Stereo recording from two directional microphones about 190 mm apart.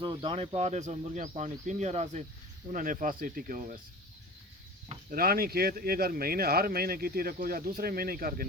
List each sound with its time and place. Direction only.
0.0 s speech: 25° right (ahead or behind); by 3.8 s 45° right (ahead or behind)
5.1 s speech: 50° right (ahead or behind)